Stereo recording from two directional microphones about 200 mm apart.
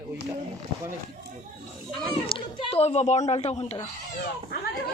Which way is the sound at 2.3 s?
30° left (ahead or behind).